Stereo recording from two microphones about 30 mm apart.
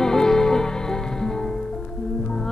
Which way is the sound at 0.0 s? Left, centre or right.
Centre.